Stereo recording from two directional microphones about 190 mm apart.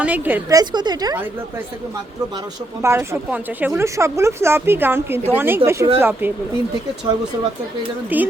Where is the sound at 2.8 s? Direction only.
15° right (ahead or behind).